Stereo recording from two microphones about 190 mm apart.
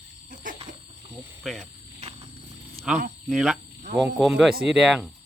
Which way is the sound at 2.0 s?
35° right (ahead or behind).